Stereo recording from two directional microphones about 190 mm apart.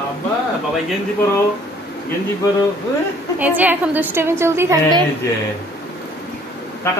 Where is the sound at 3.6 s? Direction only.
10° right (ahead or behind).